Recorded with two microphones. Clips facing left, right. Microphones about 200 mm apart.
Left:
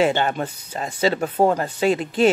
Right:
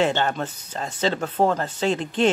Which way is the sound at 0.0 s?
5° left (ahead or behind).